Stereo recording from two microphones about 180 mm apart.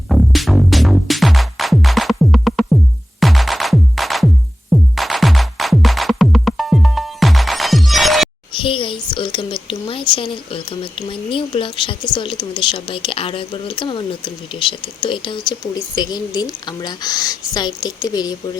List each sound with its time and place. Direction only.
0.1 s music: centre (ahead or behind)
8.6 s a woman's voice: 30° left (ahead or behind)